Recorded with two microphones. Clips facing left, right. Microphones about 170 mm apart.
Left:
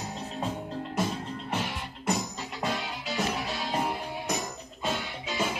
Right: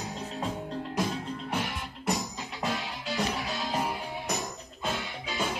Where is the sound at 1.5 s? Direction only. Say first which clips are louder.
Left 2 dB; centre (ahead or behind).